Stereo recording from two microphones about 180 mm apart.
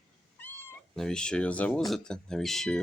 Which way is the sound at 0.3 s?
10° left (ahead or behind).